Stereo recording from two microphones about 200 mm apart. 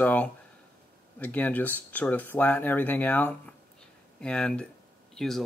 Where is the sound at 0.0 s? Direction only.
10° left (ahead or behind).